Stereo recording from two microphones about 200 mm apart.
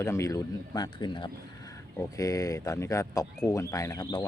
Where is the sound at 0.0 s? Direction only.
15° left (ahead or behind).